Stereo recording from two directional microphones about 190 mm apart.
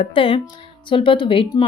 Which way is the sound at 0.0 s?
25° left (ahead or behind).